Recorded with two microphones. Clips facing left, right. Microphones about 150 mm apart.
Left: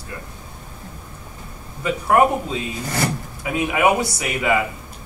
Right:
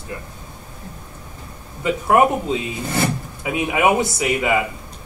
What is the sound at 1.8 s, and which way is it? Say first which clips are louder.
Speech: right 1 dB; 20° right (ahead or behind).